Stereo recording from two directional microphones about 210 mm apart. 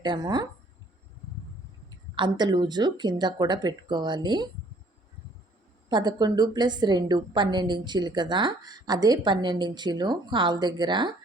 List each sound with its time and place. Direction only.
0.0 s a woman's voice: 20° right (ahead or behind)
1.9 s a woman's voice: 20° right (ahead or behind)
5.9 s a woman's voice: 20° right (ahead or behind)